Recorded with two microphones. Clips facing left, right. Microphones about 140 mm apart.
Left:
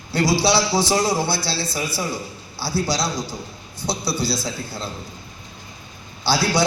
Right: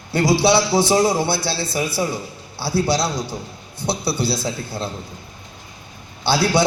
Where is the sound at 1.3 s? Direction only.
55° right (ahead or behind).